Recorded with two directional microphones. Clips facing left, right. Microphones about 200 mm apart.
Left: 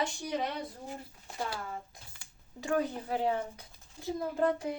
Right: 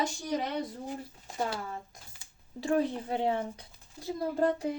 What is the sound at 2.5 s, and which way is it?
A child's voice, 30° right (ahead or behind).